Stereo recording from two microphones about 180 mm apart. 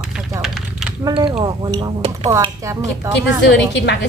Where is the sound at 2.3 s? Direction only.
15° right (ahead or behind).